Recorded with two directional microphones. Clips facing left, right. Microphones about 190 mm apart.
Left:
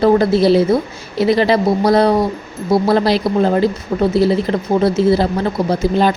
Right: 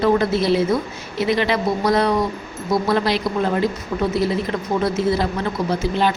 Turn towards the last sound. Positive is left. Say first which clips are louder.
# left 5 dB
turn(degrees=40)  # may be behind; listen again after turning